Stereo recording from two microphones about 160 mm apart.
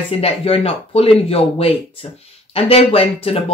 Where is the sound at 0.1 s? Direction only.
40° left (ahead or behind).